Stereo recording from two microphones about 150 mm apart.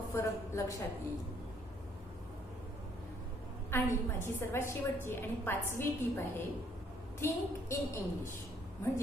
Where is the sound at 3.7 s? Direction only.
15° left (ahead or behind).